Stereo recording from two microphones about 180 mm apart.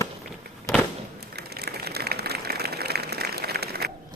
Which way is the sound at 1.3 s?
60° right (ahead or behind).